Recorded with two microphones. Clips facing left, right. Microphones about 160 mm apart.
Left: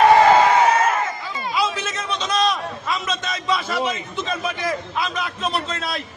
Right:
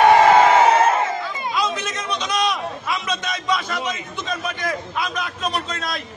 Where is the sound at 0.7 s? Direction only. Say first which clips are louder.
Right 3 dB; 25° right (ahead or behind).